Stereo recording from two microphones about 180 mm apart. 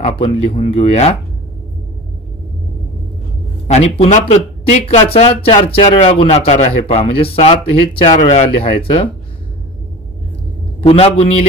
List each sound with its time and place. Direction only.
0.0 s speech: 35° left (ahead or behind)
3.6 s speech: 40° left (ahead or behind)
10.8 s speech: 30° left (ahead or behind)